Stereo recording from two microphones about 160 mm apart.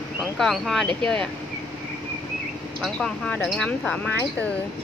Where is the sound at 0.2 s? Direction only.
Centre (ahead or behind).